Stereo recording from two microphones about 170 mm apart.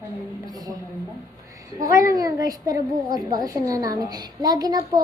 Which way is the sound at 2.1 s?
20° right (ahead or behind).